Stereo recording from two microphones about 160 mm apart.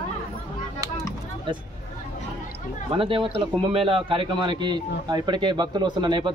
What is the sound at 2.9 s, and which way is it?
A man's voice, 35° right (ahead or behind).